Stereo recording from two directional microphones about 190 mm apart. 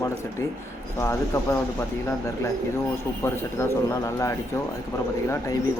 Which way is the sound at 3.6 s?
15° left (ahead or behind).